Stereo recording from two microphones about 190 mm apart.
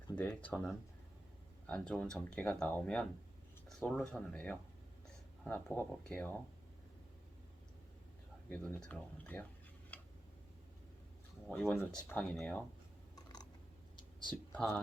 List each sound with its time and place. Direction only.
0.2 s speech: 10° left (ahead or behind)
8.4 s speech: 10° left (ahead or behind)
9.9 s tick-tock: 10° left (ahead or behind)
11.4 s speech: 10° left (ahead or behind)
13.1 s typing: 20° left (ahead or behind)
14.5 s speech: 5° left (ahead or behind)